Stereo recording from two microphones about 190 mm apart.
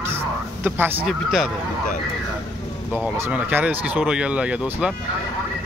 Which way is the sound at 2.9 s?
10° right (ahead or behind).